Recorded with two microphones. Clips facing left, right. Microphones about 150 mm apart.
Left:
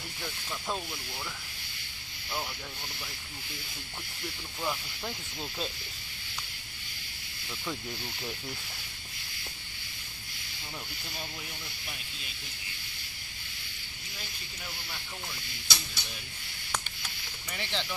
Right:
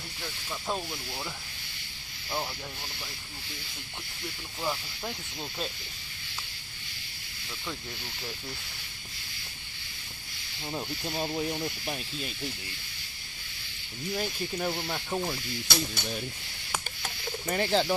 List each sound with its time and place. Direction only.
0.2 s speech: 10° right (ahead or behind)
4.6 s speech: 10° right (ahead or behind)
10.7 s speech: 40° right (ahead or behind)
14.1 s speech: 55° right (ahead or behind)
17.0 s bird: 45° right (ahead or behind)